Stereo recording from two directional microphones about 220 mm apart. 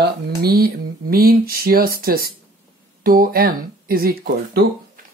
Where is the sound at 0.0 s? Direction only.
45° right (ahead or behind).